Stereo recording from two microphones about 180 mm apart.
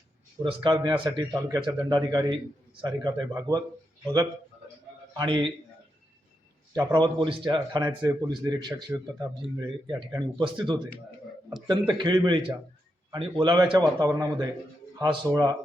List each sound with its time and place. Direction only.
0.4 s speech: 25° right (ahead or behind)
5.1 s speech: 25° right (ahead or behind)
6.7 s a man's voice: 25° right (ahead or behind)